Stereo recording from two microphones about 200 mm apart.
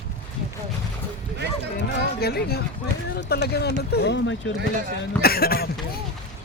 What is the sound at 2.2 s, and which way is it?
Speech, 50° left (ahead or behind).